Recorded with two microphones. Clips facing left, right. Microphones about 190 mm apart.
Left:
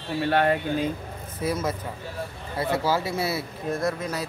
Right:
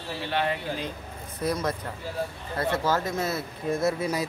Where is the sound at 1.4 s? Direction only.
5° left (ahead or behind).